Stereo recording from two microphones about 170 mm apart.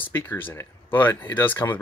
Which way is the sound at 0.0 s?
10° left (ahead or behind).